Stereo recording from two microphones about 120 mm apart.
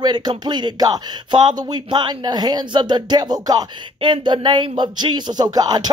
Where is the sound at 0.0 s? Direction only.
35° right (ahead or behind).